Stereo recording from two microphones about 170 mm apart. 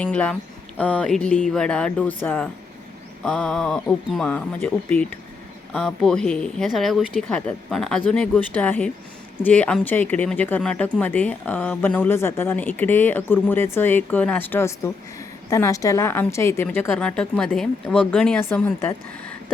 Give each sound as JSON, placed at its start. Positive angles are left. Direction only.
{"t": 0.0, "sound": "speech", "side_deg": 10}